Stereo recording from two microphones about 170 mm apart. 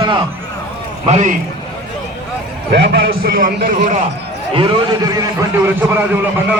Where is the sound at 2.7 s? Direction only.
80° right; by 4.0 s 45° right (ahead or behind).